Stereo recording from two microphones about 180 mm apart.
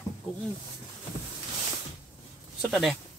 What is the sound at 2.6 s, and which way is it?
Speech, centre (ahead or behind).